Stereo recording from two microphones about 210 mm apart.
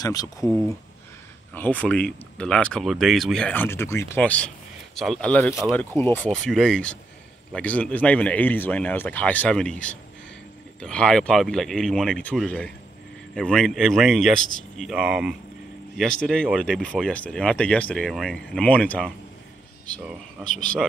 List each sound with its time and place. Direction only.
0.0 s speech: 15° left (ahead or behind)
20.4 s speech: centre (ahead or behind)